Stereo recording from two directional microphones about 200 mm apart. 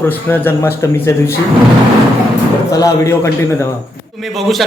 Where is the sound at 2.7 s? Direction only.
15° left (ahead or behind).